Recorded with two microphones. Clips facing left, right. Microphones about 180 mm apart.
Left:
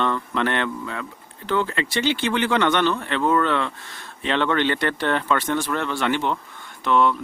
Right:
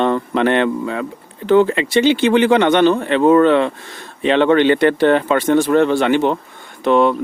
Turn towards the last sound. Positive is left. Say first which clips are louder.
# right 6 dB
turn(degrees=-20)  # may be behind; listen again after turning